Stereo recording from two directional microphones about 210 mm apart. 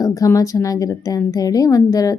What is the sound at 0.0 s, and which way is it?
A woman's voice, 15° left (ahead or behind).